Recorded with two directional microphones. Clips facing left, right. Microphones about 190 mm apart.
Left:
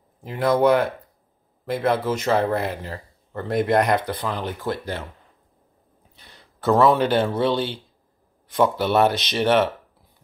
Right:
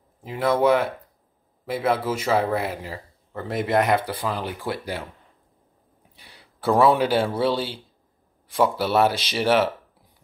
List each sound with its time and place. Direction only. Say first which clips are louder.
0.2 s speech: left 2 dB; centre (ahead or behind)
6.1 s speech: left 1 dB; 10° right (ahead or behind)